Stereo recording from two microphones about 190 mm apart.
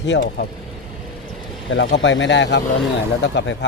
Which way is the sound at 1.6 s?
75° left (ahead or behind).